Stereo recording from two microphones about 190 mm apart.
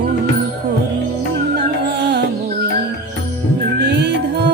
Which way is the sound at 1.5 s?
60° right (ahead or behind).